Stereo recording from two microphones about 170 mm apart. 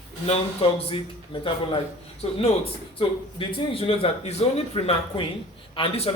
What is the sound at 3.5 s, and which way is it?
Speech, 35° left (ahead or behind).